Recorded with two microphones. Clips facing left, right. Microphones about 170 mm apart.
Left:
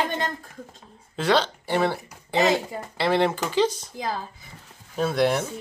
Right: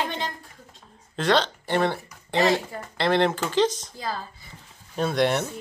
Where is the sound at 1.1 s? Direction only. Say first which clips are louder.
Even; 10° left (ahead or behind).